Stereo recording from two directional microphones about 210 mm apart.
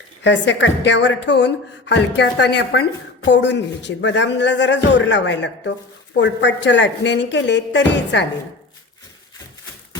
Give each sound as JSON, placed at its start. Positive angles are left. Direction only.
{"t": 0.2, "sound": "a woman's voice", "side_deg": 60}